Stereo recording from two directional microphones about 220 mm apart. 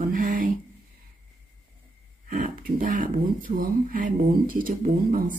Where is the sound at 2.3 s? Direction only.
40° right (ahead or behind).